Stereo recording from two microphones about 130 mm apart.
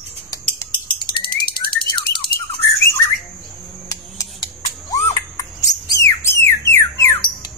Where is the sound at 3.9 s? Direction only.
25° left (ahead or behind).